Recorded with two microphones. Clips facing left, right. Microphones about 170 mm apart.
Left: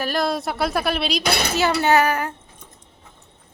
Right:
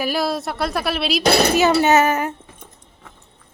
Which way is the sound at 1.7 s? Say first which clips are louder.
Right 3 dB; 20° right (ahead or behind).